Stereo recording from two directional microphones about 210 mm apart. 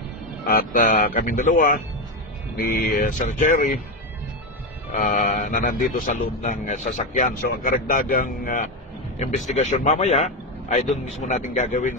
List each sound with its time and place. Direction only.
0.5 s a man's voice: 45° left (ahead or behind)
4.9 s a man's voice: 40° left (ahead or behind)